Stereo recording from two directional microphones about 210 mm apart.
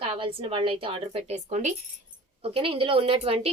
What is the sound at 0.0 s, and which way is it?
A woman's voice, 25° right (ahead or behind).